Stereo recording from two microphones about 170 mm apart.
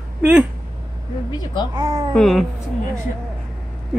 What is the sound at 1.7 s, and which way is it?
Speech, 25° right (ahead or behind).